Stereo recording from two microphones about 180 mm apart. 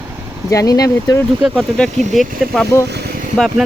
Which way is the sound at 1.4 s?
Centre (ahead or behind).